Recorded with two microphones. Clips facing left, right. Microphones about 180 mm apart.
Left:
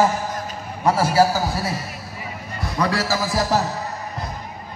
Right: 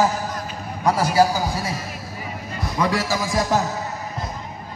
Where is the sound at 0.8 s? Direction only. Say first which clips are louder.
Left 1 dB; 10° left (ahead or behind).